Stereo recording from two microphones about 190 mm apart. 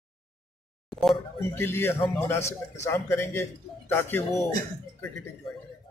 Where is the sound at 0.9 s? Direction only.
Centre (ahead or behind).